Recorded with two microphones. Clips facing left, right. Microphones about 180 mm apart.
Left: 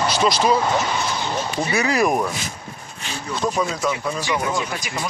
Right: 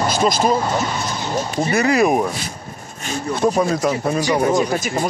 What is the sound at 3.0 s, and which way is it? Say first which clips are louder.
Speech: right 6 dB; 50° right (ahead or behind).